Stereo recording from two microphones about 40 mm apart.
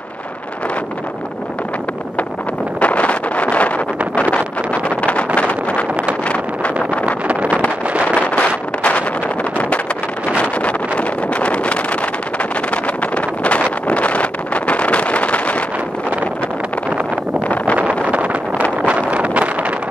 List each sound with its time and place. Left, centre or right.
2.8 s vehicle: left
4.1 s wind noise: left
6.2 s vehicle: left
8.4 s wind noise: left
10.3 s vehicle: left
12.7 s wind noise: left
17.7 s vehicle: right
18.9 s wind noise: right